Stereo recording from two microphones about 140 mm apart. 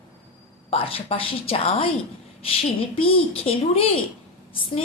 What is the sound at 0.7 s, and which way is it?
A woman's voice, 40° left (ahead or behind).